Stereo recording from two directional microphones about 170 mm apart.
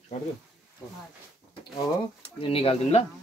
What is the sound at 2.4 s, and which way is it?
Speech, 35° left (ahead or behind).